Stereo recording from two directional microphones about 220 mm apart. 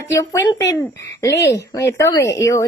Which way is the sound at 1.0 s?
50° left (ahead or behind).